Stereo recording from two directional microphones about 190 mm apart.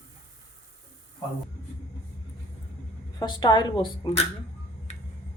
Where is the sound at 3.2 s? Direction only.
25° left (ahead or behind).